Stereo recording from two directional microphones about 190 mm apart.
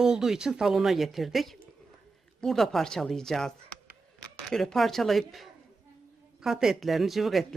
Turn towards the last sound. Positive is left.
turn(degrees=0)  # may be behind; listen again after turning